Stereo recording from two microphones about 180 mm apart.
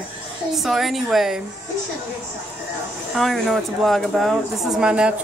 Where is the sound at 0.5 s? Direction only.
Centre (ahead or behind).